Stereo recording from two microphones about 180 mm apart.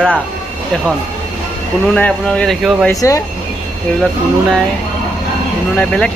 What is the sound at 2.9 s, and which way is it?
Speech, 20° left (ahead or behind).